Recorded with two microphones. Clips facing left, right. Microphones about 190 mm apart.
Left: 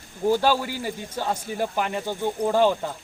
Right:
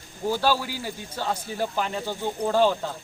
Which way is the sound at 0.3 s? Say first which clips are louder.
Left 3 dB; 15° left (ahead or behind).